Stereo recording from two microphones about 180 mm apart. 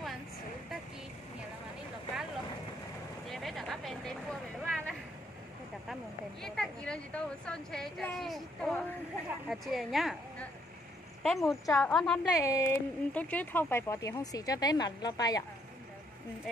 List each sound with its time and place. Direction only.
3.3 s a sound: centre (ahead or behind)
6.4 s a woman's voice: 5° left (ahead or behind)
11.3 s speech: 15° left (ahead or behind)
11.9 s a woman's voice: centre (ahead or behind)
12.4 s speech: 15° left (ahead or behind)